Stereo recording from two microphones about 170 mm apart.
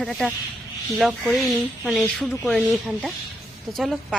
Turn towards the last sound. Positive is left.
turn(degrees=0)  # may be behind; listen again after turning